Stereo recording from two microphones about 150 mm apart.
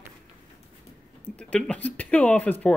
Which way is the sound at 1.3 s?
5° left (ahead or behind).